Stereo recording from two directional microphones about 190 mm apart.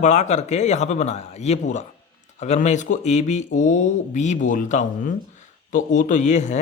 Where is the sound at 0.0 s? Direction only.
35° left (ahead or behind).